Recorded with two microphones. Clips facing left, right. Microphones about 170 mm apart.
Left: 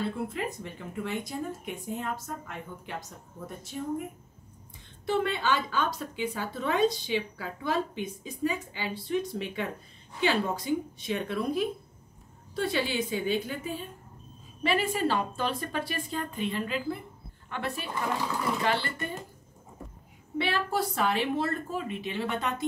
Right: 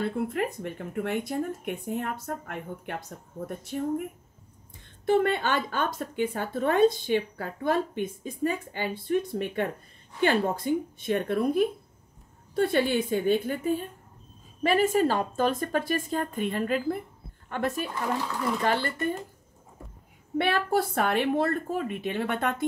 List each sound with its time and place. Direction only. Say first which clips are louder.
0.0 s speech: right 4 dB; 55° right (ahead or behind)
5.0 s a woman's voice: right 4 dB; 50° right (ahead or behind)
20.3 s a woman's voice: right 4 dB; 55° right (ahead or behind)